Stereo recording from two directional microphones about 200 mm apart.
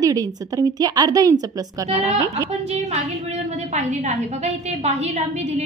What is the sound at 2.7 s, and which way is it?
A woman's voice, 35° right (ahead or behind).